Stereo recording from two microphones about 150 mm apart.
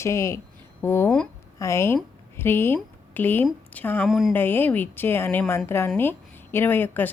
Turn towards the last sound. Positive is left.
turn(degrees=15)  # may be behind; listen again after turning